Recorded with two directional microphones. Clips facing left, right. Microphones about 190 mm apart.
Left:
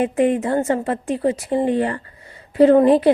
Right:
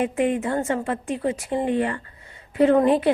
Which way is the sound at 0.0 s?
35° left (ahead or behind).